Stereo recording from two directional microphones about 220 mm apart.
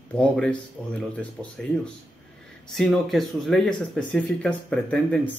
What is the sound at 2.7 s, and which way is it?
Speech, centre (ahead or behind).